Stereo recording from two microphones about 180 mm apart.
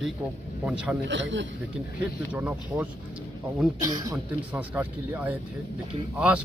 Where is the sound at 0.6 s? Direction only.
5° right (ahead or behind).